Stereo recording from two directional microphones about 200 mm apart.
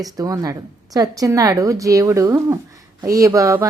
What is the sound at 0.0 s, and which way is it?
Speech, 20° right (ahead or behind).